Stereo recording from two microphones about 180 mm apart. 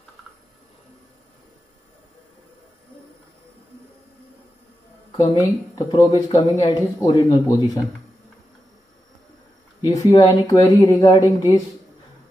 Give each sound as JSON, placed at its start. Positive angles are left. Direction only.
{"t": 5.2, "sound": "speech", "side_deg": 20}
{"t": 9.8, "sound": "speech", "side_deg": 20}